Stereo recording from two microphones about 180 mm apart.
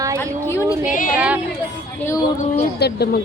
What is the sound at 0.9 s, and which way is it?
Speech, 45° left (ahead or behind).